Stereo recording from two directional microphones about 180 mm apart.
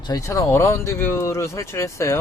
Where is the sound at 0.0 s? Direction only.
20° left (ahead or behind).